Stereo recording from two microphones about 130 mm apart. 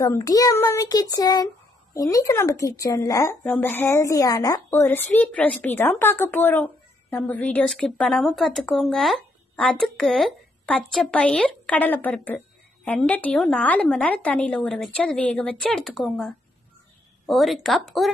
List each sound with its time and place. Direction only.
0.0 s child singing: 30° left (ahead or behind)
3.4 s child singing: 10° left (ahead or behind); by 4.6 s 30° left (ahead or behind)
4.6 s a woman's voice: 15° left (ahead or behind); by 18.1 s centre (ahead or behind)